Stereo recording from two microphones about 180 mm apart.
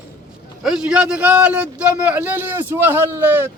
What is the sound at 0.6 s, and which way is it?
A man's voice, 5° right (ahead or behind).